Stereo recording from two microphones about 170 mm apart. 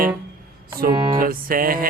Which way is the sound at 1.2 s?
55° right (ahead or behind).